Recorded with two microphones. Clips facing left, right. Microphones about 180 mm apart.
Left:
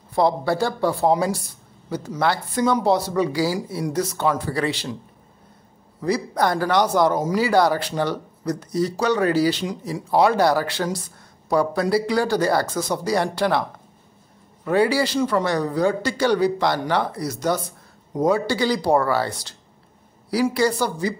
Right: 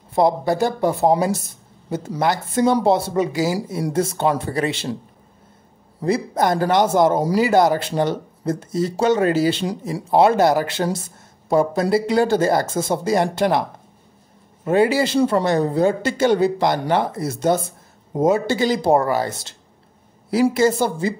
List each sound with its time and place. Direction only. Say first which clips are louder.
0.1 s speech: right 2 dB; 20° right (ahead or behind)
5.9 s speech: right 2 dB; 25° right (ahead or behind)